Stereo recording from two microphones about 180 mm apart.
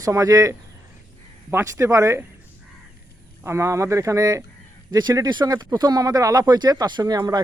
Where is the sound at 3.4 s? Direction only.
15° right (ahead or behind).